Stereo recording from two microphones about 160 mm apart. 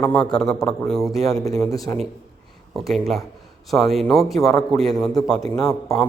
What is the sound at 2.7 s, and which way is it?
A man's voice, centre (ahead or behind).